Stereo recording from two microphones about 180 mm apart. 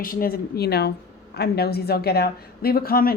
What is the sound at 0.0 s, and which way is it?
A woman's voice, 55° left (ahead or behind).